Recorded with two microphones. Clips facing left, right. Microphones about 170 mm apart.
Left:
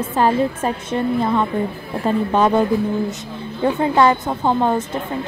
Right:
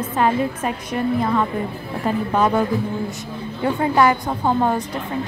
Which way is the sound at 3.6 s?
25° left (ahead or behind).